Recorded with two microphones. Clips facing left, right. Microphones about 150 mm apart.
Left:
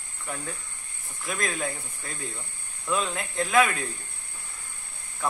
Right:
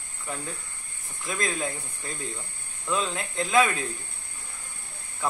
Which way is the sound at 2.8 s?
15° left (ahead or behind).